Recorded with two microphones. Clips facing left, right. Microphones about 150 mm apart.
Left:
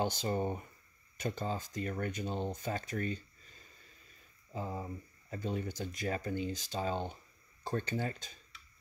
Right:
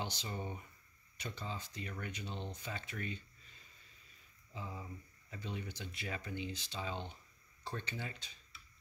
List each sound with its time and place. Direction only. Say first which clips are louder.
0.0 s speech: left 10 dB; 50° left (ahead or behind)